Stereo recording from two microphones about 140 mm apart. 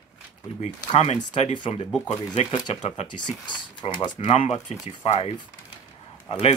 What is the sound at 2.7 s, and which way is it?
Speech, 50° left (ahead or behind).